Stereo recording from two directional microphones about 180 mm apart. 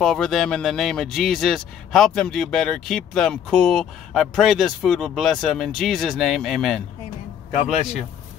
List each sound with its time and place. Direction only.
0.0 s speech: centre (ahead or behind)